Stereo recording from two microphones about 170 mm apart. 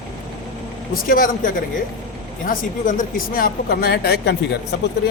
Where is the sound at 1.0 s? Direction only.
55° left (ahead or behind); by 4.4 s 75° left (ahead or behind).